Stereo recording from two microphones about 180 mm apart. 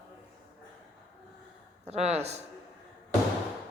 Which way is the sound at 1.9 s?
35° right (ahead or behind).